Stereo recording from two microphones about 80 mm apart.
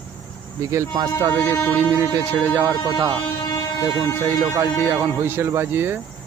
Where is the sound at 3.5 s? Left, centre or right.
Left.